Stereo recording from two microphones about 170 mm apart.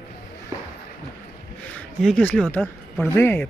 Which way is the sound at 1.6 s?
5° left (ahead or behind).